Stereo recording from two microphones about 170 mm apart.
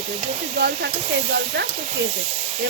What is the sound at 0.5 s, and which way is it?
Speech, 75° right (ahead or behind).